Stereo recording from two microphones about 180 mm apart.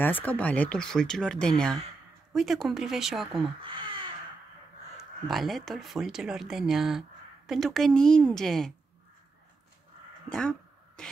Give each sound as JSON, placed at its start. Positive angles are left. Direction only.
{"t": 0.0, "sound": "speech", "side_deg": 10}
{"t": 3.6, "sound": "crow", "side_deg": -30}
{"t": 5.3, "sound": "speech", "side_deg": 0}